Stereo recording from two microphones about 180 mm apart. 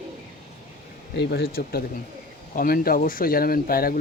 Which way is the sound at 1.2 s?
65° left (ahead or behind).